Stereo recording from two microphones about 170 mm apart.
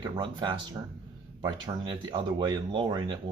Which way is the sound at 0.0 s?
30° right (ahead or behind).